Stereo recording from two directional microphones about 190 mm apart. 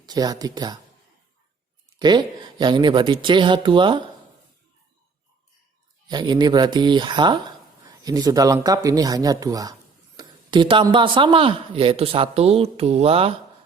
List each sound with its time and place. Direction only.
0.0 s speech: 20° right (ahead or behind)
2.0 s speech: 25° right (ahead or behind)
6.1 s speech: 20° right (ahead or behind)